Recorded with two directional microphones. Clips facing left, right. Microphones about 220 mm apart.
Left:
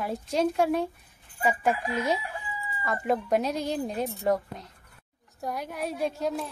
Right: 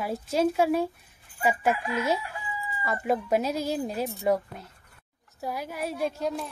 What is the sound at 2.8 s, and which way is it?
A woman's voice, 5° right (ahead or behind).